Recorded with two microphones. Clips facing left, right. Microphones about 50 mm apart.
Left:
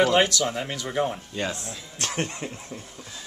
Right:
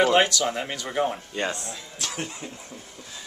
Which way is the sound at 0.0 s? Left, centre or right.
Centre.